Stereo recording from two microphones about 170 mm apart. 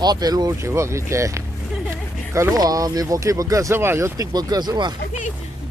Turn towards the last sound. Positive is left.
turn(degrees=-25)  # may be behind; listen again after turning